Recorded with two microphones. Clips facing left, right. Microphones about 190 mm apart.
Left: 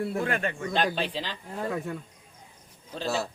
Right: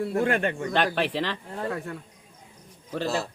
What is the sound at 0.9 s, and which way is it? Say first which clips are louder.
Speech: right 5 dB; 75° right (ahead or behind).